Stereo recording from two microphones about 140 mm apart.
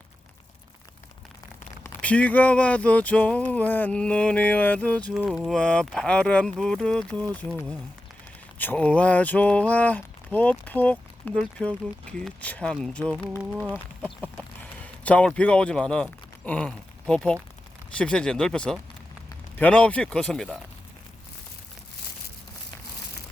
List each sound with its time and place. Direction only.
1.8 s speech: 10° left (ahead or behind)
5.1 s speech: 5° right (ahead or behind)
13.3 s speech: 10° right (ahead or behind)
15.0 s speech: 10° left (ahead or behind)